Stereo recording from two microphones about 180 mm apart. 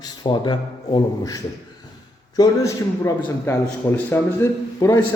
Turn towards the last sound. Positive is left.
turn(degrees=15)  # may be behind; listen again after turning